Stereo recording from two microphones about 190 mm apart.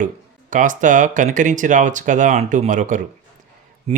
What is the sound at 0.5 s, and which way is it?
Speech, 40° right (ahead or behind).